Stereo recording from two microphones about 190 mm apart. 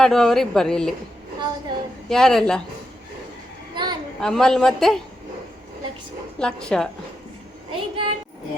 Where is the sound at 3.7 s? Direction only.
25° right (ahead or behind).